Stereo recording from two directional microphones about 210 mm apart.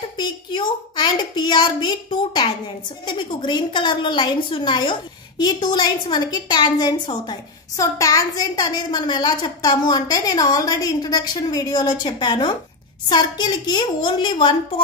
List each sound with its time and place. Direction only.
0.2 s a woman's voice: 20° left (ahead or behind)